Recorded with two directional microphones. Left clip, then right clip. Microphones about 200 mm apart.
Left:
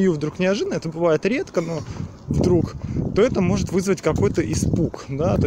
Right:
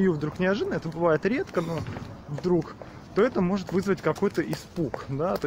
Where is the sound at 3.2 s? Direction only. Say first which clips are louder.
Left 5 dB; 35° left (ahead or behind).